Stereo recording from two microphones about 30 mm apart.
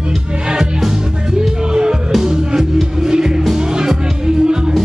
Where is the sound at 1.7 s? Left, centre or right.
Right.